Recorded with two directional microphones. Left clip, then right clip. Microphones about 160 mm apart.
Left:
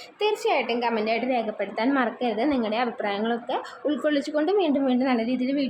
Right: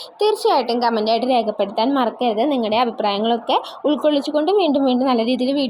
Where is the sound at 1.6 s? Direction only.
20° right (ahead or behind).